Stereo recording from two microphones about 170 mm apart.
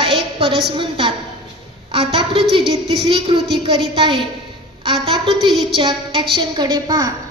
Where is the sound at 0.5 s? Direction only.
30° right (ahead or behind).